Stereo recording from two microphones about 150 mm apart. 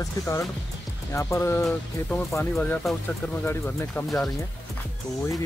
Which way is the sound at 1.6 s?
Centre (ahead or behind).